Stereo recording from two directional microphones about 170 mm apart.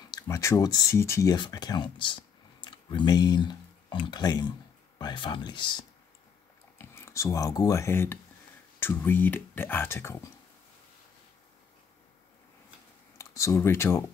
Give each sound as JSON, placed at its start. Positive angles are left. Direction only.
{"t": 0.0, "sound": "speech", "side_deg": 20}
{"t": 6.8, "sound": "speech", "side_deg": 15}
{"t": 13.2, "sound": "speech", "side_deg": 15}